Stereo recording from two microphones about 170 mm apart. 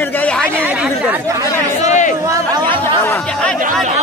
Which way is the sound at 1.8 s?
45° left (ahead or behind).